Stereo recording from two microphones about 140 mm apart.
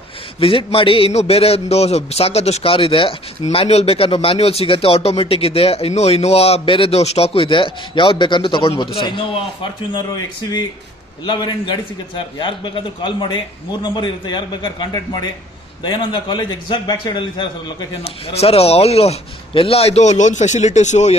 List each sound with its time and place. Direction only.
0.4 s speech: 40° left (ahead or behind)
11.2 s a man's voice: 35° left (ahead or behind); by 21.2 s 55° left (ahead or behind)